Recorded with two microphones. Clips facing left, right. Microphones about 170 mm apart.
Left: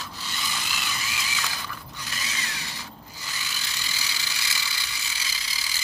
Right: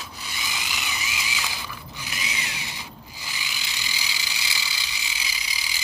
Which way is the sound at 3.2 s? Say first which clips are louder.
Right 1 dB; 15° right (ahead or behind).